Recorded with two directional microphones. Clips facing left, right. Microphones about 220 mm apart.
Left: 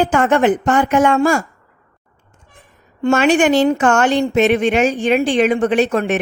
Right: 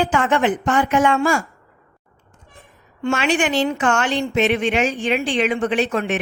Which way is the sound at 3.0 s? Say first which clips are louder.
Left 6 dB; 45° left (ahead or behind).